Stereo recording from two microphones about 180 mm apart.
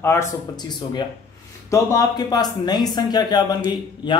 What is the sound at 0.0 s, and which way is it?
Speech, 15° left (ahead or behind).